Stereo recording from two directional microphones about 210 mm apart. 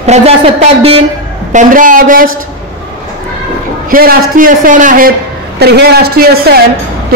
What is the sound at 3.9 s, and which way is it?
A man's voice, 40° right (ahead or behind).